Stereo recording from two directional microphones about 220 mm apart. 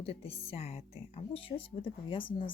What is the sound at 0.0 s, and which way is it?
Speech, 25° left (ahead or behind).